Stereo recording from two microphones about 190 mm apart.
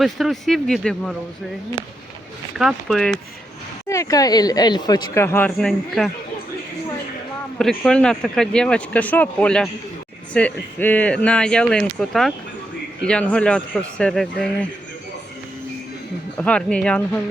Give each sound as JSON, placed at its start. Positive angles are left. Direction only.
{"t": 0.0, "sound": "speech", "side_deg": 0}
{"t": 2.6, "sound": "speech", "side_deg": 0}
{"t": 3.8, "sound": "speech", "side_deg": 15}
{"t": 7.6, "sound": "speech", "side_deg": 5}
{"t": 16.4, "sound": "speech", "side_deg": 5}